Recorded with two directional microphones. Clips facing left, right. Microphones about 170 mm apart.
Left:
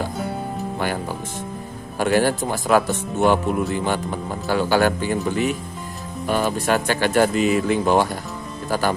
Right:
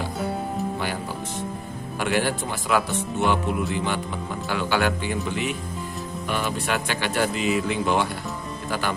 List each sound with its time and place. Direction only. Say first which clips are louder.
0.2 s music: even; centre (ahead or behind)
2.0 s speech: left 6 dB; 40° left (ahead or behind)